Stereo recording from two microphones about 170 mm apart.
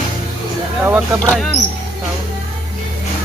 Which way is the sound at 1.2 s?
5° left (ahead or behind).